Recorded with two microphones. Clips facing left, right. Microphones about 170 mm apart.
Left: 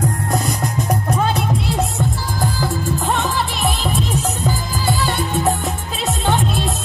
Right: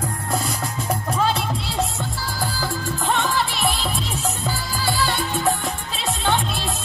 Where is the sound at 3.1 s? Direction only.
Centre (ahead or behind).